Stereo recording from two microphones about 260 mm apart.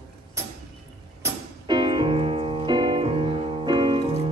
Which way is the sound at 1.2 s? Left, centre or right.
Centre.